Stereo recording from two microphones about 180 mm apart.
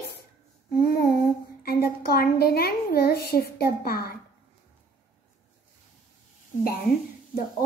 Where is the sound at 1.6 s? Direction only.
60° left (ahead or behind).